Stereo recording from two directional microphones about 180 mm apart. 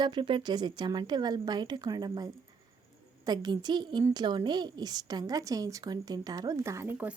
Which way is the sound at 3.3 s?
25° right (ahead or behind).